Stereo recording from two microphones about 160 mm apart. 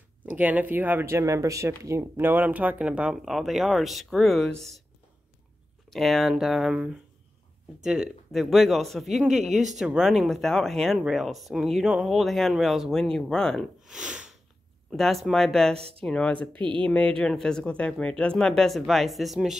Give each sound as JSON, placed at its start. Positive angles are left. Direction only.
{"t": 0.2, "sound": "speech", "side_deg": -10}
{"t": 5.9, "sound": "speech", "side_deg": 0}
{"t": 16.3, "sound": "speech", "side_deg": -30}
{"t": 16.8, "sound": "speech", "side_deg": 5}